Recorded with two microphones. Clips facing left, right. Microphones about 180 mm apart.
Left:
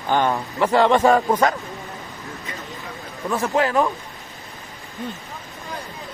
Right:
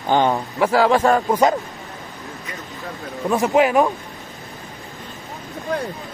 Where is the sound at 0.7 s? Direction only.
5° right (ahead or behind).